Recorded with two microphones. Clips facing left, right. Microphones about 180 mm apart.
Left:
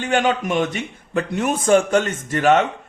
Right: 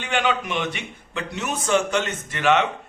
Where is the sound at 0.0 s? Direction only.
45° left (ahead or behind).